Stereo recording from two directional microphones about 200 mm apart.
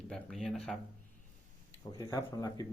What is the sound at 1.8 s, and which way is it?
Speech, 15° left (ahead or behind).